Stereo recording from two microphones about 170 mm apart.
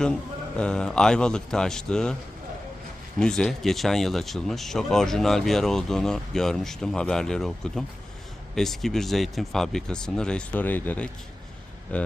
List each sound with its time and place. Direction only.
0.0 s speech: 5° left (ahead or behind)
3.2 s speech: 5° left (ahead or behind)